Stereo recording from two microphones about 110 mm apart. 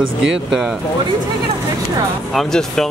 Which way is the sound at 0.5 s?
5° right (ahead or behind).